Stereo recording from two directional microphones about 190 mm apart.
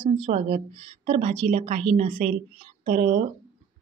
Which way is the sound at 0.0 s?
30° right (ahead or behind).